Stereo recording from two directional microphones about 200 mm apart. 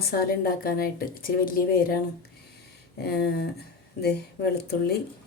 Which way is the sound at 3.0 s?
55° left (ahead or behind).